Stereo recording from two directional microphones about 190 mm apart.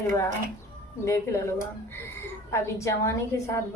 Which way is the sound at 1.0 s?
15° left (ahead or behind).